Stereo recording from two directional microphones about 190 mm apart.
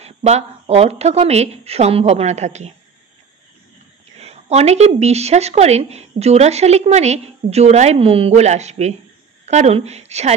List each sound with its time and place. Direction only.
0.0 s speech: 35° right (ahead or behind)
4.2 s speech: 35° right (ahead or behind)